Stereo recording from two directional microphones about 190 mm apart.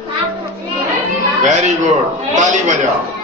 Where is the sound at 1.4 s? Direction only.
40° right (ahead or behind).